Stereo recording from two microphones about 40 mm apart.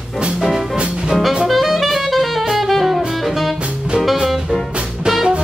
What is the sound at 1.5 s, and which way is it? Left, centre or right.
Saxophone, centre.